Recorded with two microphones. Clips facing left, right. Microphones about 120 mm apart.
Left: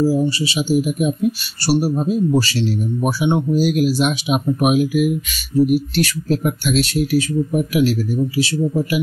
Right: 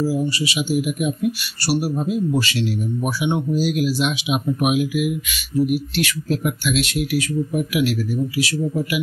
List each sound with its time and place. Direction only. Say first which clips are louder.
0.0 s speech: left 4 dB; 30° left (ahead or behind)
3.5 s speech: left 4 dB; 50° left (ahead or behind); by 9.0 s 30° left (ahead or behind)